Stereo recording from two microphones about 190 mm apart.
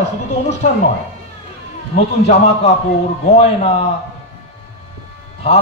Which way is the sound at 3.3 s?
35° left (ahead or behind).